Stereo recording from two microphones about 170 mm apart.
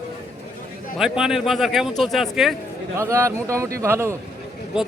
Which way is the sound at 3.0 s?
15° right (ahead or behind).